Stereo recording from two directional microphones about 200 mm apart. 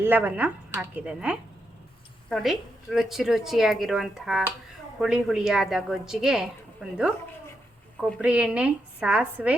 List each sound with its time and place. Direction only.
0.0 s a woman's voice: 10° right (ahead or behind)
8.2 s a woman's voice: 5° right (ahead or behind)